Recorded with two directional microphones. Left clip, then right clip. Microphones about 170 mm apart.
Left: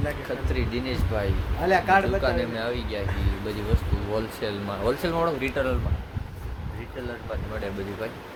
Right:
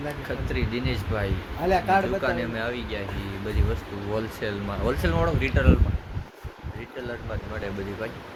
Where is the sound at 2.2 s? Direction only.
5° right (ahead or behind).